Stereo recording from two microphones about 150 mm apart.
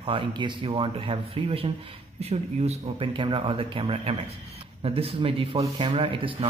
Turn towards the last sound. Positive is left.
turn(degrees=-35)  # may be behind; listen again after turning